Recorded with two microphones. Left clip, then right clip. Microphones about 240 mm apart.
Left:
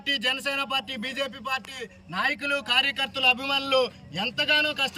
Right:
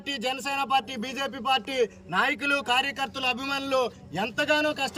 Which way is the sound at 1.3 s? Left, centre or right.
Right.